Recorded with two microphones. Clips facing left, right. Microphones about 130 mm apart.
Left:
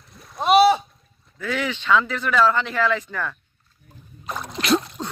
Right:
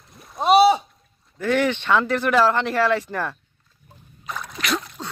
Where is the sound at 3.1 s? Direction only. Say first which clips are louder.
Right 3 dB; 25° right (ahead or behind).